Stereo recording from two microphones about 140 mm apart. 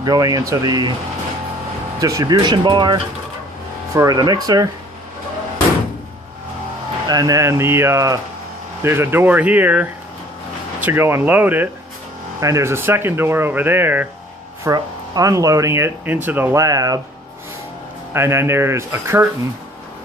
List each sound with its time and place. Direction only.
0.0 s speech: 25° right (ahead or behind)
2.0 s speech: 25° right (ahead or behind)
7.1 s speech: 25° right (ahead or behind)
18.1 s speech: 20° right (ahead or behind)